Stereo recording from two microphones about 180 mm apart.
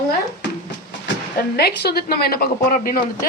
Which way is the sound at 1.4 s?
60° left (ahead or behind).